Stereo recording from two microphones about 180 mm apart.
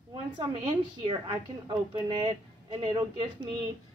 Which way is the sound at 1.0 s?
30° right (ahead or behind).